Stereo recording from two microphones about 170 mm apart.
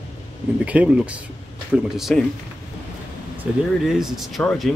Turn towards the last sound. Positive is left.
turn(degrees=0)  # may be behind; listen again after turning